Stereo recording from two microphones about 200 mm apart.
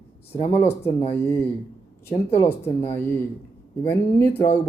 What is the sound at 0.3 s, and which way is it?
Speech, 30° left (ahead or behind).